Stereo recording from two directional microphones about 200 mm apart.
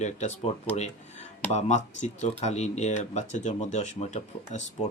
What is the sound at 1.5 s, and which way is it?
Speech, 35° left (ahead or behind).